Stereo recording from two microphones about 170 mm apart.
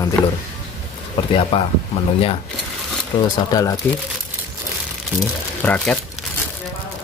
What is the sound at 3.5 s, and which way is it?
Speech, 20° left (ahead or behind).